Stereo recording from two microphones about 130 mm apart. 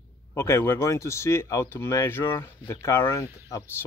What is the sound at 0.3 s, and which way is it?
Speech, 20° left (ahead or behind).